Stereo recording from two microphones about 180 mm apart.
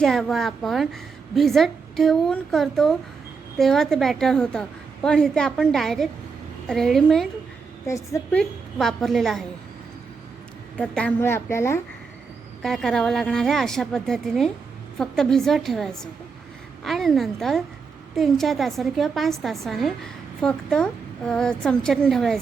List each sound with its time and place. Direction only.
0.0 s a woman's voice: centre (ahead or behind)
7.9 s a woman's voice: 15° left (ahead or behind)
8.4 s a woman's voice: centre (ahead or behind)
10.8 s a woman's voice: 5° left (ahead or behind)
12.6 s a woman's voice: centre (ahead or behind)